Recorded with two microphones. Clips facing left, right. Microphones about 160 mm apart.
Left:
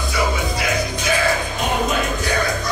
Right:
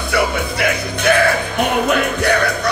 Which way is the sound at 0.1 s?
60° right (ahead or behind).